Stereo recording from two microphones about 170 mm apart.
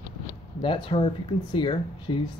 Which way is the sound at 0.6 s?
30° left (ahead or behind).